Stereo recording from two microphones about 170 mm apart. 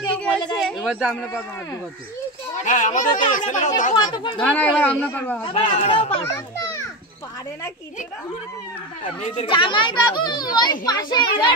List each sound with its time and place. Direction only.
0.6 s a sound: centre (ahead or behind)
2.5 s speech: 45° left (ahead or behind)
3.9 s a child's voice: 30° left (ahead or behind)
4.4 s a man's voice: 10° left (ahead or behind)
5.4 s speech: 35° left (ahead or behind)
6.2 s a child's voice: 20° left (ahead or behind)
9.2 s speech: 40° left (ahead or behind)
9.5 s a child's voice: 30° left (ahead or behind)